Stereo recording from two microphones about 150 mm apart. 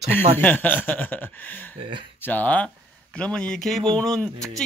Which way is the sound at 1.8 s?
35° right (ahead or behind).